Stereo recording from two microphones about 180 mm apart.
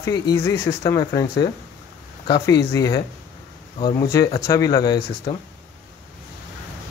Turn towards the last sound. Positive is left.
turn(degrees=20)  # may be behind; listen again after turning